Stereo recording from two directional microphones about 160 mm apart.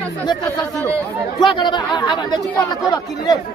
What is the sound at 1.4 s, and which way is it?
Speech, 25° left (ahead or behind).